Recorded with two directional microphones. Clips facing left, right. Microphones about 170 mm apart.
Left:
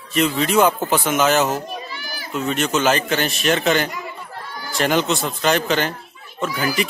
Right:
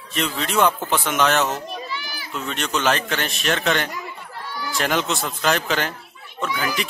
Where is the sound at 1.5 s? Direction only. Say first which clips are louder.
Left 2 dB; 45° left (ahead or behind).